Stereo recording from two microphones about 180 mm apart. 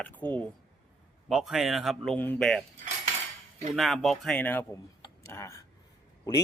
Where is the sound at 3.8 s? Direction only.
Centre (ahead or behind).